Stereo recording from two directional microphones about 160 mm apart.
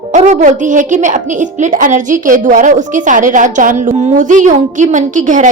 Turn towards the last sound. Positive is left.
turn(degrees=-50)  # may be behind; listen again after turning